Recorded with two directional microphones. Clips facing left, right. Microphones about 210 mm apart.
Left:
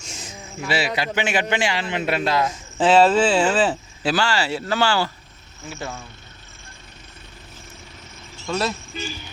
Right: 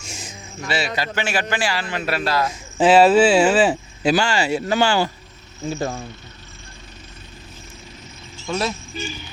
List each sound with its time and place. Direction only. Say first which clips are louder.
0.0 s a sound: right 1 dB; 10° right (ahead or behind)
0.6 s a man's voice: left 1 dB; 10° left (ahead or behind)
2.7 s speech: right 3 dB; 10° right (ahead or behind)
5.6 s speech: right 8 dB; 40° right (ahead or behind)
8.4 s speech: even; 5° right (ahead or behind)